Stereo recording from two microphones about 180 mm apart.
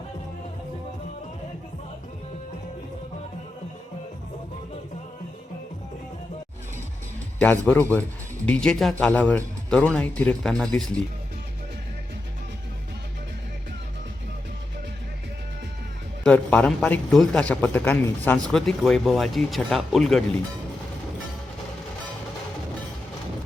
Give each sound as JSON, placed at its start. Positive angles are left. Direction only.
{"t": 7.4, "sound": "a man's voice", "side_deg": 10}
{"t": 16.2, "sound": "a man's voice", "side_deg": 5}